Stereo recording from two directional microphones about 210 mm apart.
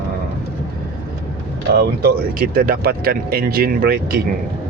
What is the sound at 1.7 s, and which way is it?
Speech, 45° right (ahead or behind).